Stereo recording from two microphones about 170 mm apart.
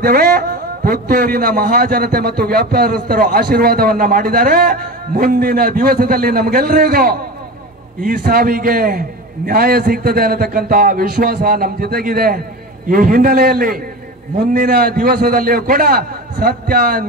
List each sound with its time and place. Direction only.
0.0 s a man's voice: 60° right (ahead or behind)